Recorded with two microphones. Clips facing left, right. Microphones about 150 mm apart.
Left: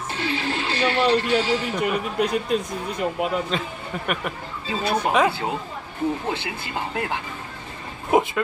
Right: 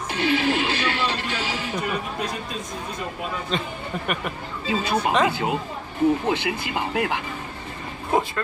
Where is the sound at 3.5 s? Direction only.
Centre (ahead or behind).